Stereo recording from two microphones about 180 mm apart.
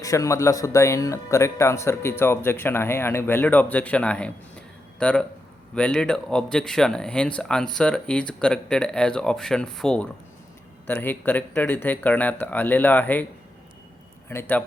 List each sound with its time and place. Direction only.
0.0 s speech: 20° left (ahead or behind)
14.3 s speech: 10° left (ahead or behind)